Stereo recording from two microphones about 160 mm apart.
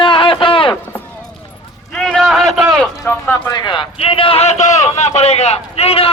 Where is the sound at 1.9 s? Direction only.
5° left (ahead or behind).